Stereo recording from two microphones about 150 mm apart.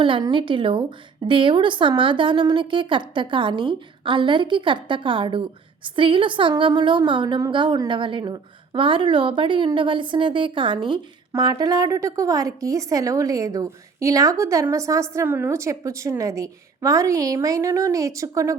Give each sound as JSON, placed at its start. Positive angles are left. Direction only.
{"t": 0.0, "sound": "a woman's voice", "side_deg": -30}